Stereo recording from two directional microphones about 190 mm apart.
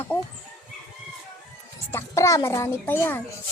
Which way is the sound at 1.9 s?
15° left (ahead or behind).